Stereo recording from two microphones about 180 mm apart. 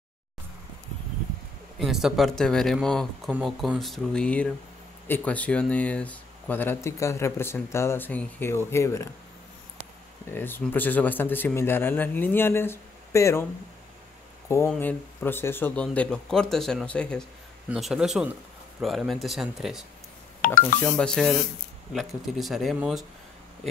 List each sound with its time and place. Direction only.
1.8 s speech: centre (ahead or behind); by 9.1 s 15° left (ahead or behind)
10.3 s speech: 10° left (ahead or behind)
14.7 s speech: 10° left (ahead or behind)
20.4 s speech: 50° left (ahead or behind)
20.9 s speech: 5° left (ahead or behind)